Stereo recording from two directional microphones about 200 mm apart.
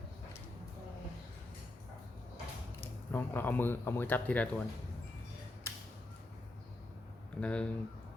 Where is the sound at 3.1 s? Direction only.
10° left (ahead or behind).